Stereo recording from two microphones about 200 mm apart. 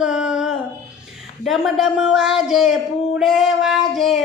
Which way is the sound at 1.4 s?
Centre (ahead or behind).